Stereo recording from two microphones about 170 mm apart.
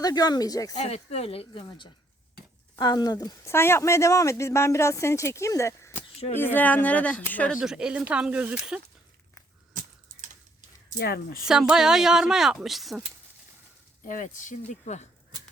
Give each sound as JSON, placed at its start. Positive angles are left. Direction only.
{"t": 0.0, "sound": "speech", "side_deg": 25}
{"t": 0.7, "sound": "speech", "side_deg": 40}
{"t": 7.6, "sound": "speech", "side_deg": -5}
{"t": 10.9, "sound": "speech", "side_deg": 65}
{"t": 11.4, "sound": "speech", "side_deg": -5}
{"t": 14.0, "sound": "speech", "side_deg": 50}